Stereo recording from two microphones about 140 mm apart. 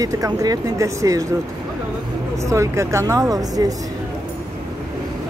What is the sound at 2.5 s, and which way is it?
Speech, 20° right (ahead or behind).